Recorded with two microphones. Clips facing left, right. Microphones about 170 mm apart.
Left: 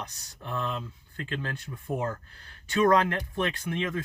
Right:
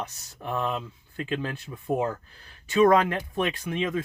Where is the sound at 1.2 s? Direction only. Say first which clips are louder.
Right 4 dB; 15° right (ahead or behind).